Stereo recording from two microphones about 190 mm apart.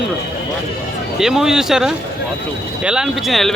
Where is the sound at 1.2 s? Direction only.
5° right (ahead or behind).